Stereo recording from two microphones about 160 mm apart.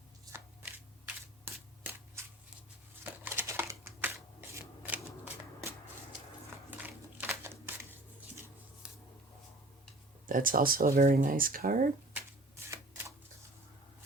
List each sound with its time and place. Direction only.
0.3 s crushing: 15° right (ahead or behind)
1.8 s shuffling cards: 15° right (ahead or behind)
3.0 s a sound: 15° right (ahead or behind)
8.8 s a sound: 5° right (ahead or behind)
10.2 s speech: 60° right (ahead or behind)
12.1 s shuffling cards: 15° right (ahead or behind)